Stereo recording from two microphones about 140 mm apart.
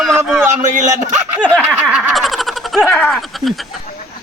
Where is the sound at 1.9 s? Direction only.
5° right (ahead or behind).